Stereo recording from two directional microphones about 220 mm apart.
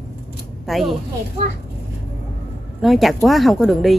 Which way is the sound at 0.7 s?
Centre (ahead or behind).